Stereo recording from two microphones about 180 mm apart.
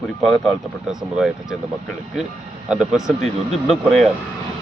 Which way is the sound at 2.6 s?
5° right (ahead or behind).